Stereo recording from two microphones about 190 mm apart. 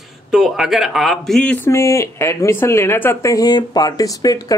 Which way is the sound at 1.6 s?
15° left (ahead or behind).